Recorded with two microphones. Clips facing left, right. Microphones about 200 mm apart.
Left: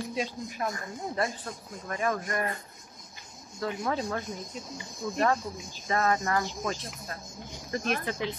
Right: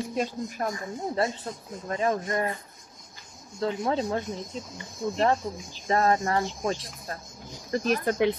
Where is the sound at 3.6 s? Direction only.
25° right (ahead or behind).